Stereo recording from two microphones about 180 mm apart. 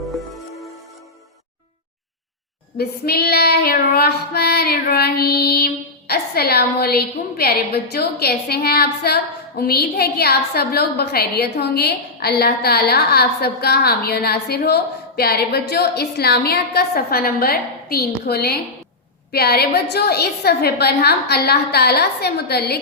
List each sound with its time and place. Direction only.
0.0 s music: centre (ahead or behind)
2.7 s child singing: 60° left (ahead or behind)